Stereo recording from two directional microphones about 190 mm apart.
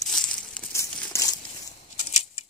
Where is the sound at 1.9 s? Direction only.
35° left (ahead or behind).